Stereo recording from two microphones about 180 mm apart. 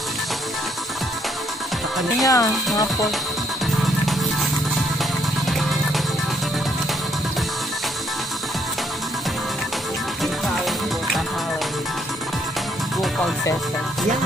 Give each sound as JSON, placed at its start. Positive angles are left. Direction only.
{"t": 2.2, "sound": "speech", "side_deg": 20}